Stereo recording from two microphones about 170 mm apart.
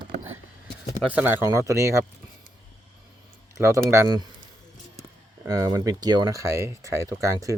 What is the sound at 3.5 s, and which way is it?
Speech, 15° right (ahead or behind).